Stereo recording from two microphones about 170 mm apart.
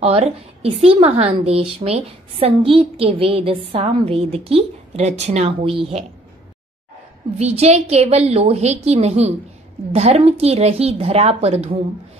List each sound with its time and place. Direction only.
0.0 s a woman's voice: 35° right (ahead or behind)
7.3 s a woman's voice: 40° right (ahead or behind)